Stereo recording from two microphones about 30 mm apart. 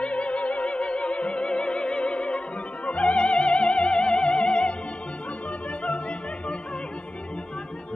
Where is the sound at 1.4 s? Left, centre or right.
Left.